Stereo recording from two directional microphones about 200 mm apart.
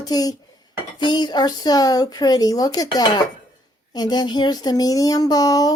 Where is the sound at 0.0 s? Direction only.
20° left (ahead or behind).